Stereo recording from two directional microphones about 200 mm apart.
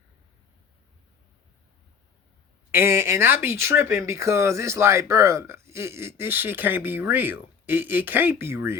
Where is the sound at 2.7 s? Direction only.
15° right (ahead or behind).